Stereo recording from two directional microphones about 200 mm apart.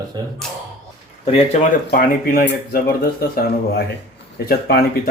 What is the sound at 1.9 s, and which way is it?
Speech, 50° left (ahead or behind).